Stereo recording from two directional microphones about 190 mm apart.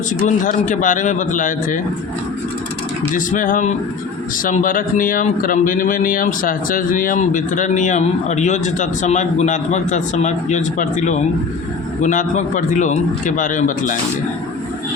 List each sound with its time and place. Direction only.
0.2 s a man's voice: 40° left (ahead or behind)
3.2 s a man's voice: 45° left (ahead or behind)